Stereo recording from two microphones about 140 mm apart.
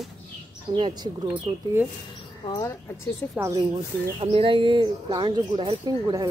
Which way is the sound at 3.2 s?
15° left (ahead or behind).